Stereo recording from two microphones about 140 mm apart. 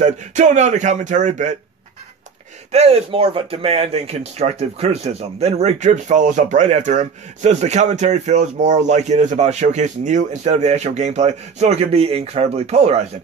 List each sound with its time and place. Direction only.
0.0 s speech: 60° right (ahead or behind)
2.7 s speech: 50° right (ahead or behind)